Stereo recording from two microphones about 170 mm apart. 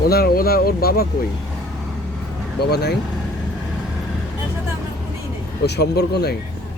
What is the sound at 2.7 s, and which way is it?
Speech, 75° left (ahead or behind).